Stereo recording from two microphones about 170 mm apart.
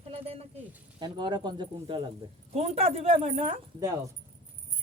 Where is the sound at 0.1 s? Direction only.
35° right (ahead or behind).